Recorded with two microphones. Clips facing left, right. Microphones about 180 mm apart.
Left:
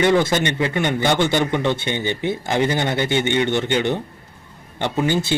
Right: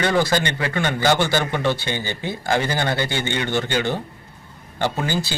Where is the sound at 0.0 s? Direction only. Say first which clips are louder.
Left 3 dB; 20° left (ahead or behind).